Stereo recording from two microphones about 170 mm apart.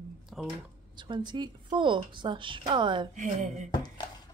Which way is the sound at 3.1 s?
50° right (ahead or behind).